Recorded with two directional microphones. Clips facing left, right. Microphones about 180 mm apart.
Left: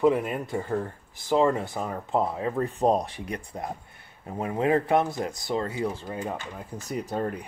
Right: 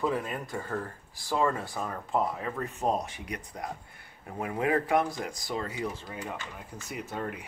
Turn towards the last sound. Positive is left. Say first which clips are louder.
# left 6 dB
turn(degrees=35)  # may be behind; listen again after turning